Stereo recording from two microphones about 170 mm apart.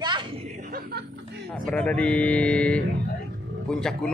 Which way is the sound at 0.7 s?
65° right (ahead or behind).